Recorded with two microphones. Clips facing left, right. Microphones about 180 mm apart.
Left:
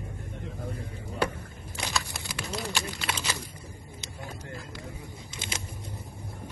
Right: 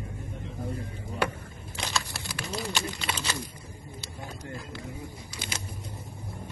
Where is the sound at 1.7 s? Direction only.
Centre (ahead or behind).